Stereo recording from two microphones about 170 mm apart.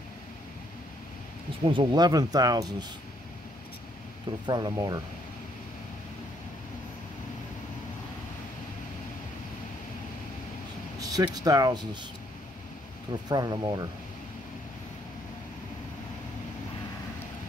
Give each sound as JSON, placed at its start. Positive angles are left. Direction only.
{"t": 1.7, "sound": "speech", "side_deg": -25}
{"t": 4.5, "sound": "speech", "side_deg": -25}
{"t": 11.0, "sound": "vehicle", "side_deg": -20}
{"t": 11.3, "sound": "speech", "side_deg": -20}
{"t": 13.3, "sound": "speech", "side_deg": -25}